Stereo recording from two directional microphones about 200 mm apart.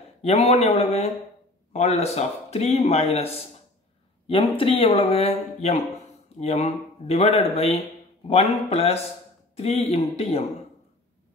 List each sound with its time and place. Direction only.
0.2 s speech: 30° left (ahead or behind)